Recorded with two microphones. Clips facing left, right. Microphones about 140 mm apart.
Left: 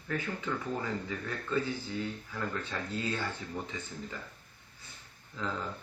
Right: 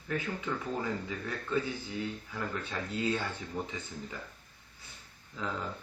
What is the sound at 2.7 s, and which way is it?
Speech, 20° right (ahead or behind).